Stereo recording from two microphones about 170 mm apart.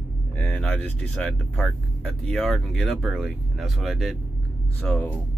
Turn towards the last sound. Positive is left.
turn(degrees=5)  # may be behind; listen again after turning